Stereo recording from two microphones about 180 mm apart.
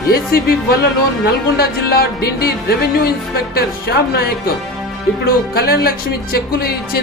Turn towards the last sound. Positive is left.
turn(degrees=60)  # may be behind; listen again after turning